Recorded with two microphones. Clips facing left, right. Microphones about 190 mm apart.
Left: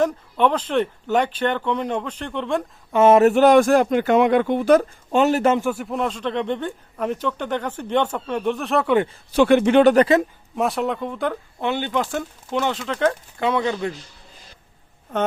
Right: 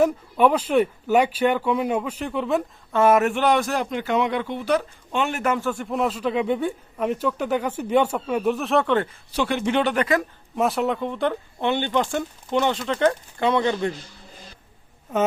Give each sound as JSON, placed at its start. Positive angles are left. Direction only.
{"t": 0.0, "sound": "speech", "side_deg": -10}
{"t": 2.9, "sound": "speech", "side_deg": 25}
{"t": 3.2, "sound": "speech", "side_deg": 40}
{"t": 5.5, "sound": "speech", "side_deg": 15}
{"t": 5.8, "sound": "speech", "side_deg": 0}
{"t": 9.3, "sound": "speech", "side_deg": 55}
{"t": 10.5, "sound": "speech", "side_deg": 0}